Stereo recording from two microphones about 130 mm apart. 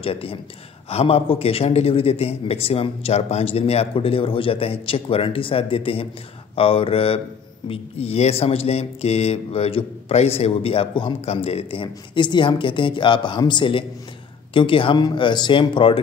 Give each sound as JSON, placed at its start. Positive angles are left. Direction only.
{"t": 0.0, "sound": "speech", "side_deg": 45}